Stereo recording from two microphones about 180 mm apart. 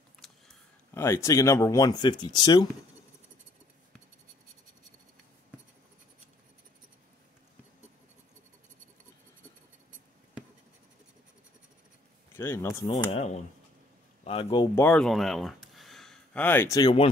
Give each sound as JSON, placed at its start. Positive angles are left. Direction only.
{"t": 0.2, "sound": "a sound", "side_deg": 0}
{"t": 0.9, "sound": "speech", "side_deg": 15}
{"t": 12.4, "sound": "speech", "side_deg": 15}
{"t": 13.1, "sound": "speech", "side_deg": 35}
{"t": 14.8, "sound": "speech", "side_deg": 5}